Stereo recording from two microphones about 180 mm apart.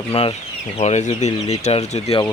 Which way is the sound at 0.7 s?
40° left (ahead or behind).